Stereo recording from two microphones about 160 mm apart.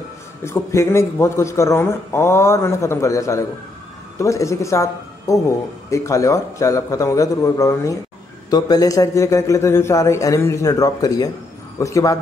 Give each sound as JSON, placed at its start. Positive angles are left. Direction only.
{"t": 0.4, "sound": "a man's voice", "side_deg": 15}